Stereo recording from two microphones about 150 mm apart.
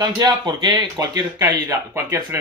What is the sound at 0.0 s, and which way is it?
Speech, 30° right (ahead or behind).